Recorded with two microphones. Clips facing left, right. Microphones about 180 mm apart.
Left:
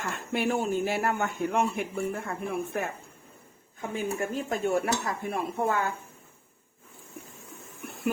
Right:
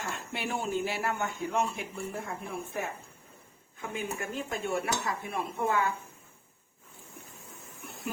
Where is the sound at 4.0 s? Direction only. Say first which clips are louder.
Left 5 dB; 45° left (ahead or behind).